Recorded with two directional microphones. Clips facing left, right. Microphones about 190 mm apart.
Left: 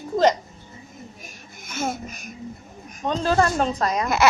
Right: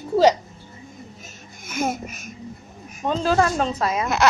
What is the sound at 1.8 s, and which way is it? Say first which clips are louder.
Speech: right 3 dB; 15° right (ahead or behind).